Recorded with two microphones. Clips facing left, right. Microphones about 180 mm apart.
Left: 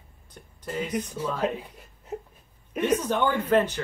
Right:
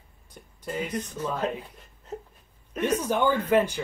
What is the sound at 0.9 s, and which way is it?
Speech, 10° left (ahead or behind).